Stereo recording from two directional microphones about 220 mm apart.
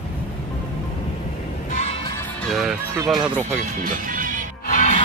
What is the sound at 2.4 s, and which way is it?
Speech, centre (ahead or behind).